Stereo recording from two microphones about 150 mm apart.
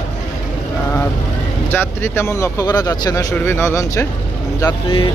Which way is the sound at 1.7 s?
15° left (ahead or behind).